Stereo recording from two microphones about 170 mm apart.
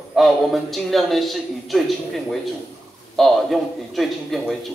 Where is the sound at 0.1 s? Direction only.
Centre (ahead or behind).